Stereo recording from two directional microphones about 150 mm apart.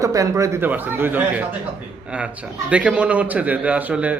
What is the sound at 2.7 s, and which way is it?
A man's voice, 10° right (ahead or behind).